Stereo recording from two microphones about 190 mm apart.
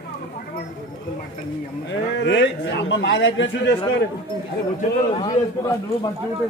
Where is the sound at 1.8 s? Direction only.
70° left (ahead or behind).